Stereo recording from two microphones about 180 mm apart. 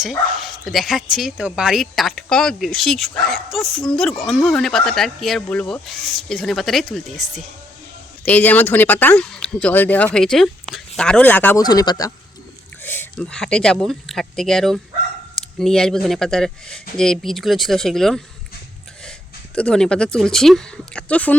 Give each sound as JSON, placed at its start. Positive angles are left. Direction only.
{"t": 0.0, "sound": "speech", "side_deg": 0}
{"t": 11.6, "sound": "speech", "side_deg": 20}
{"t": 19.5, "sound": "speech", "side_deg": 5}